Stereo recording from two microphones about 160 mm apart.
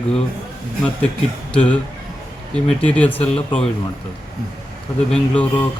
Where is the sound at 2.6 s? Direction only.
5° left (ahead or behind).